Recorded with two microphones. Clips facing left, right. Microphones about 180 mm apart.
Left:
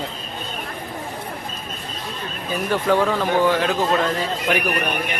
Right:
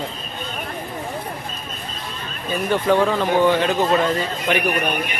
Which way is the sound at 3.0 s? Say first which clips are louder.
Right 2 dB; 5° right (ahead or behind).